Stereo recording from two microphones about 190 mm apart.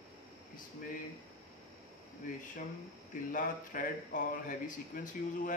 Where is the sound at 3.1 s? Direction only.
45° left (ahead or behind).